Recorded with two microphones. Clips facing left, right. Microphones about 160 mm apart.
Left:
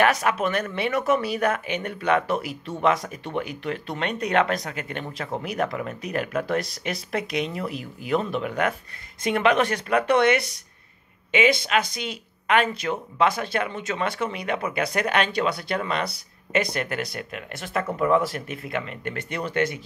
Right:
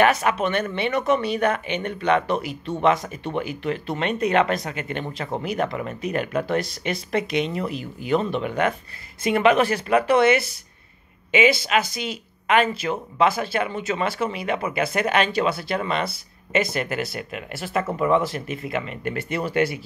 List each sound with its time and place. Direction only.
0.0 s speech: centre (ahead or behind)